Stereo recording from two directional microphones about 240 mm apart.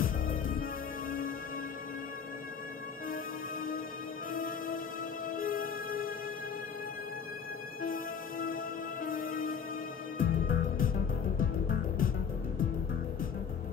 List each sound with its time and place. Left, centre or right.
0.0 s music: left
4.3 s music: left
7.8 s music: left